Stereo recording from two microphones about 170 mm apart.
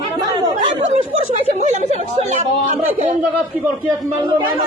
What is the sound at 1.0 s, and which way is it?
Speech, 45° right (ahead or behind).